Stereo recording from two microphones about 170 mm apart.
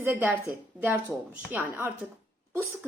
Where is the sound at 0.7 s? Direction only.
10° right (ahead or behind).